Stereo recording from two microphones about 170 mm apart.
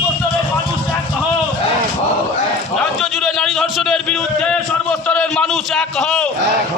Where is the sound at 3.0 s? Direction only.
5° left (ahead or behind).